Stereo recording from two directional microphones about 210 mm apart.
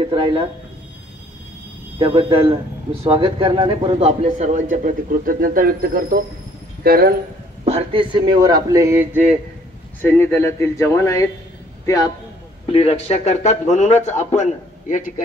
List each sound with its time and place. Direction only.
0.1 s a man's voice: 25° right (ahead or behind)
2.0 s a man's voice: 25° right (ahead or behind); by 7.2 s 45° right (ahead or behind)
7.6 s a man's voice: 25° right (ahead or behind); by 9.4 s 5° right (ahead or behind)
10.0 s a man's voice: 10° left (ahead or behind)
12.7 s a man's voice: 30° left (ahead or behind)